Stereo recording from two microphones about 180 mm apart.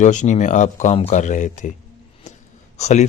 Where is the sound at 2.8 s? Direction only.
40° left (ahead or behind).